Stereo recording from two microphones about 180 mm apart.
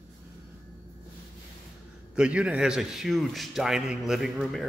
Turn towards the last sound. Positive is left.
turn(degrees=0)  # may be behind; listen again after turning